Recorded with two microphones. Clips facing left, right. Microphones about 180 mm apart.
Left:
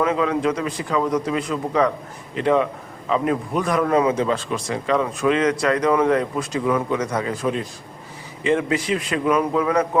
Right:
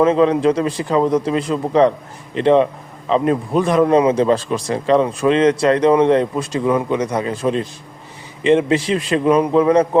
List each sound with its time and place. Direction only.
0.0 s a man's voice: 30° right (ahead or behind)